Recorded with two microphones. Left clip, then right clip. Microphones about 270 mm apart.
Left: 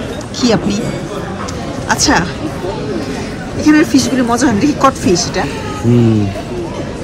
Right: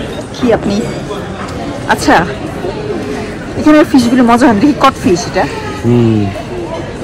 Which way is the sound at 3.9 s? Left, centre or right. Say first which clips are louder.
Right 4 dB; centre.